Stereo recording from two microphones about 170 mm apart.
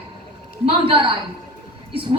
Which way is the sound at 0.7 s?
30° right (ahead or behind).